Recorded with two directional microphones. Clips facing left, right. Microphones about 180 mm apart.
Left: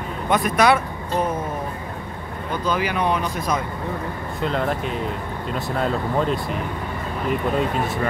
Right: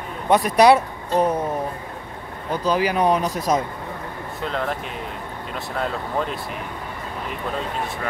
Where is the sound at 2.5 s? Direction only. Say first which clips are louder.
Right 3 dB; 35° right (ahead or behind).